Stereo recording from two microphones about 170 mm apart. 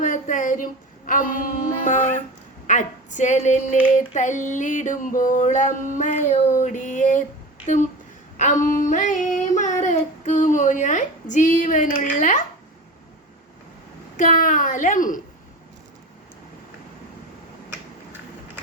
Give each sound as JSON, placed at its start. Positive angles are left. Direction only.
{"t": 0.0, "sound": "a sound", "side_deg": 45}
{"t": 2.6, "sound": "female singing", "side_deg": 45}
{"t": 14.2, "sound": "female singing", "side_deg": 50}